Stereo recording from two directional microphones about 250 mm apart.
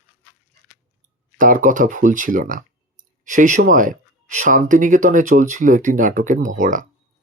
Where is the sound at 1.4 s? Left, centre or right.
Right.